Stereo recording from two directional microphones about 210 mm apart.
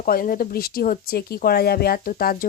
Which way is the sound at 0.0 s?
45° left (ahead or behind).